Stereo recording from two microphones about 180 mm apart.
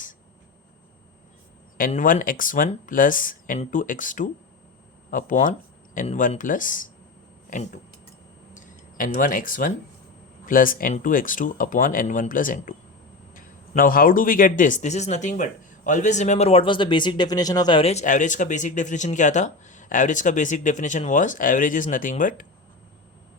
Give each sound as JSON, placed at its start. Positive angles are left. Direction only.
{"t": 1.9, "sound": "speech", "side_deg": 45}
{"t": 8.5, "sound": "a sound", "side_deg": 45}
{"t": 10.4, "sound": "speech", "side_deg": 50}